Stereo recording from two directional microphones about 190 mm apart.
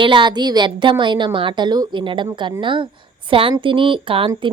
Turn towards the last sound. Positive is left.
turn(degrees=-25)  # may be behind; listen again after turning